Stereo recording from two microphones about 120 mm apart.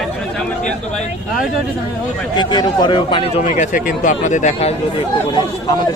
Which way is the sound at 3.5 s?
85° left.